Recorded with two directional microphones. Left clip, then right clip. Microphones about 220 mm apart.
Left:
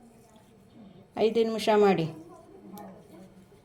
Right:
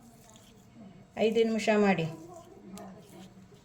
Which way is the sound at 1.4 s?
30° left (ahead or behind).